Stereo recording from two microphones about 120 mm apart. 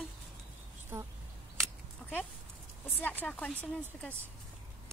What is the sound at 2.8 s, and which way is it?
A woman's voice, 15° left (ahead or behind).